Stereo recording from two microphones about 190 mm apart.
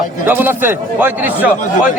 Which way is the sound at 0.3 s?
10° right (ahead or behind).